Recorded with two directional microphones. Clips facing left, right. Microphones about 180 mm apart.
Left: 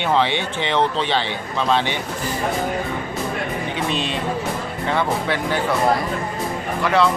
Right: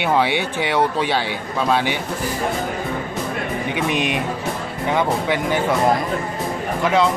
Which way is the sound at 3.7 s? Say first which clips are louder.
Right 4 dB; 15° right (ahead or behind).